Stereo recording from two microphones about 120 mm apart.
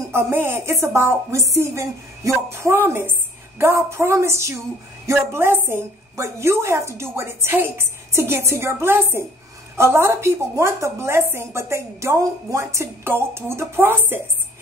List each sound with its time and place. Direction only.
0.1 s speech: 20° right (ahead or behind)